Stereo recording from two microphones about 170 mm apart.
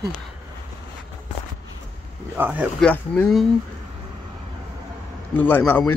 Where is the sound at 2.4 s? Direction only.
10° right (ahead or behind).